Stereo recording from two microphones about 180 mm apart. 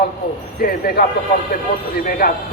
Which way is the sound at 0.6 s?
55° left (ahead or behind).